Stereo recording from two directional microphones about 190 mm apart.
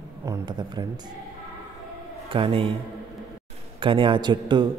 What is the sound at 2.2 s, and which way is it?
Speech, 25° right (ahead or behind).